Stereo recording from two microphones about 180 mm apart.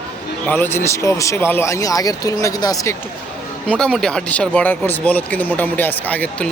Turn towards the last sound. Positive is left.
turn(degrees=10)  # may be behind; listen again after turning